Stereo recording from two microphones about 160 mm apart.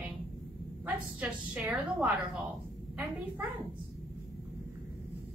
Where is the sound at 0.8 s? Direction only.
10° right (ahead or behind).